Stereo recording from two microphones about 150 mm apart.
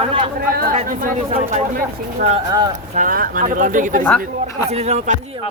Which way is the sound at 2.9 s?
65° right (ahead or behind).